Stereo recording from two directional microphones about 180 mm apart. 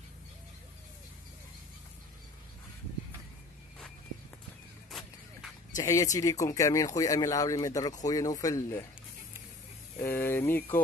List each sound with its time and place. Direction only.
5.8 s speech: 20° left (ahead or behind)
10.0 s speech: 10° left (ahead or behind)